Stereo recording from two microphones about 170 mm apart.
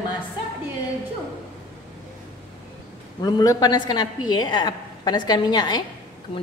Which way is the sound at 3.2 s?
20° left (ahead or behind).